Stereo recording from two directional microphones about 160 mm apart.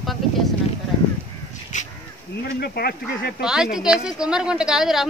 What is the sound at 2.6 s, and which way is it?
Speech, 75° left (ahead or behind).